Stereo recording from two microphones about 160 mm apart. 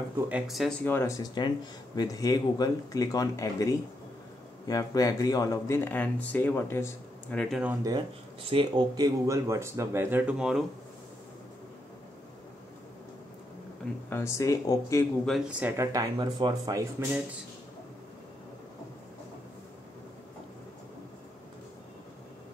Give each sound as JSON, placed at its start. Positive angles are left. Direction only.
{"t": 0.3, "sound": "speech", "side_deg": 0}
{"t": 0.8, "sound": "speech", "side_deg": 15}
{"t": 7.4, "sound": "speech", "side_deg": -5}
{"t": 8.5, "sound": "speech", "side_deg": -30}
{"t": 14.0, "sound": "speech", "side_deg": 15}
{"t": 15.2, "sound": "speech", "side_deg": 0}
{"t": 15.6, "sound": "speech", "side_deg": -15}